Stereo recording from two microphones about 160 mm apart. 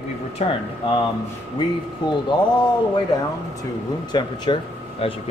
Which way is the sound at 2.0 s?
30° left (ahead or behind).